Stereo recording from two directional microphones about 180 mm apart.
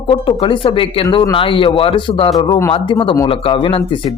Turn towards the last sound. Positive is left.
turn(degrees=30)  # may be behind; listen again after turning